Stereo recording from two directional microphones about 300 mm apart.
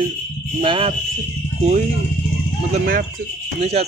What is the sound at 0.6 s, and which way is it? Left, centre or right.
Speech, centre.